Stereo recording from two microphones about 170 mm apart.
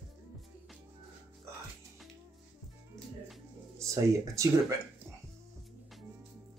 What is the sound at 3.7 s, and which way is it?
Speech, 20° right (ahead or behind).